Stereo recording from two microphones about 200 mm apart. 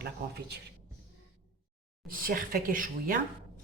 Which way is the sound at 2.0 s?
45° right (ahead or behind).